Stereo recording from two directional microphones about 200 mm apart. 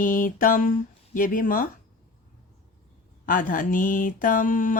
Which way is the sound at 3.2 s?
45° left (ahead or behind).